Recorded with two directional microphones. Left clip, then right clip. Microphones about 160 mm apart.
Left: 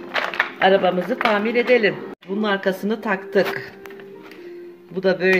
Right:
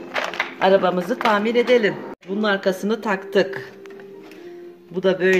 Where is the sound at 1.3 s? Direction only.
15° right (ahead or behind).